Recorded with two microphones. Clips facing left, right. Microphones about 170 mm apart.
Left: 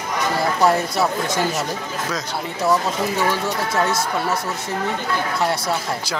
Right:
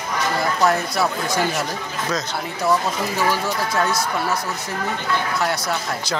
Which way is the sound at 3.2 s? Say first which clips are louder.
Even; 25° left (ahead or behind).